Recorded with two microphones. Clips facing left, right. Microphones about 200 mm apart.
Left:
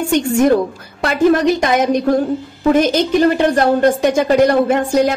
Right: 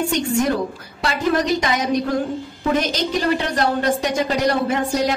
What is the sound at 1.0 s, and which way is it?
A woman's voice, 50° left (ahead or behind).